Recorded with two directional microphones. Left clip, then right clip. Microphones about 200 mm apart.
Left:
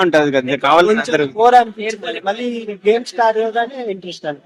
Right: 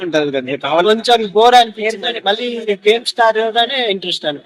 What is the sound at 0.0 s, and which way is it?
Speech, 55° left (ahead or behind).